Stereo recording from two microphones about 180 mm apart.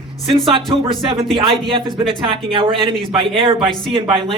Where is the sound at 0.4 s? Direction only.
25° right (ahead or behind).